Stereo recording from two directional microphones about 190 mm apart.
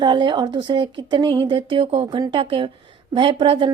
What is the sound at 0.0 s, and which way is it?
A woman's voice, 25° right (ahead or behind).